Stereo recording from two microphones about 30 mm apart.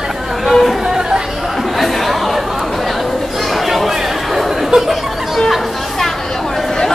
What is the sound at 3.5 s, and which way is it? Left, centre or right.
Chatter, centre.